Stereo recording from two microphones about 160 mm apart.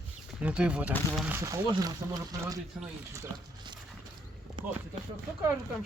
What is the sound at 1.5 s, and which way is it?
Speech, 20° right (ahead or behind).